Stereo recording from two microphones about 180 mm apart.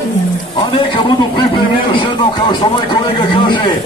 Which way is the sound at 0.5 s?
25° left (ahead or behind).